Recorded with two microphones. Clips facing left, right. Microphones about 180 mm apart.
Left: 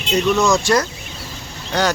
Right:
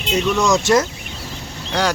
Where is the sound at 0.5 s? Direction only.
20° right (ahead or behind).